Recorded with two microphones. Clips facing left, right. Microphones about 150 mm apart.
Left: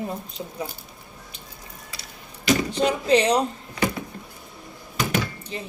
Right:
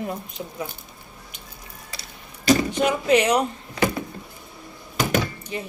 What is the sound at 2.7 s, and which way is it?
Speech, 30° left (ahead or behind).